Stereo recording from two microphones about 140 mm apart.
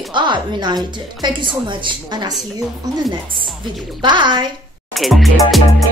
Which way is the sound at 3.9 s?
35° right (ahead or behind).